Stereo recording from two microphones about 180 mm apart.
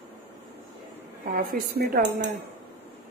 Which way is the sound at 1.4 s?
55° right (ahead or behind).